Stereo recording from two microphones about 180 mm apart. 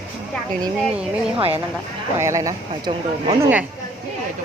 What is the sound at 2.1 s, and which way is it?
Speech, 15° right (ahead or behind).